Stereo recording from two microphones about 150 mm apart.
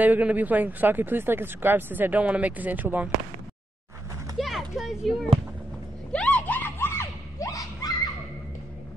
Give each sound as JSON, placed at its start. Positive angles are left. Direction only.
{"t": 0.0, "sound": "speech", "side_deg": -10}
{"t": 4.4, "sound": "a sound", "side_deg": 0}
{"t": 6.1, "sound": "screaming", "side_deg": 10}